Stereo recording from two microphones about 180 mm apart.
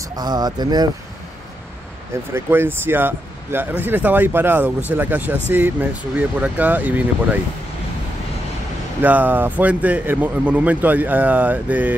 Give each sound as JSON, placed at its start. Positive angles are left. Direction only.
{"t": 0.0, "sound": "speech", "side_deg": -20}
{"t": 2.3, "sound": "a man's voice", "side_deg": -10}
{"t": 9.0, "sound": "a man's voice", "side_deg": -10}